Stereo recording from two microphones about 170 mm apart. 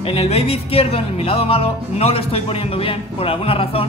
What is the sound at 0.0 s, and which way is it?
Speech, 35° left (ahead or behind).